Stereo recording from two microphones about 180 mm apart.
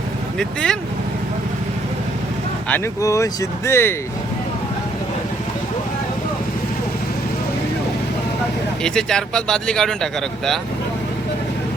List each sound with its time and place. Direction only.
0.3 s speech: 5° left (ahead or behind)
2.6 s speech: 10° left (ahead or behind)
8.8 s speech: 5° left (ahead or behind)